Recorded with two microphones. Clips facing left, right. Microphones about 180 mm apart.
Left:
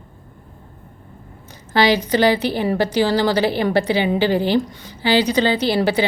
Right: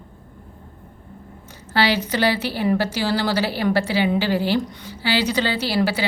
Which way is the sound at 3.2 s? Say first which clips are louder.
Left 3 dB; 10° right (ahead or behind).